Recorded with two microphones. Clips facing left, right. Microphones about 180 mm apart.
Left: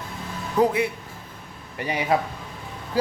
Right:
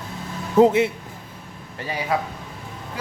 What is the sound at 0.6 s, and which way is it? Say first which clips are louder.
Speech: right 5 dB; 25° right (ahead or behind).